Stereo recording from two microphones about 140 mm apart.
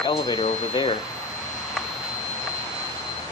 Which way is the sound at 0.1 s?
40° left (ahead or behind).